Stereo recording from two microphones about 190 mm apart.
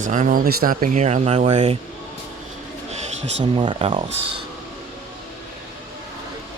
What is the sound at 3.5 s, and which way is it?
Speech, 30° right (ahead or behind).